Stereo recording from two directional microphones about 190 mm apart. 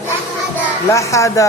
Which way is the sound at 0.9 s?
15° left (ahead or behind).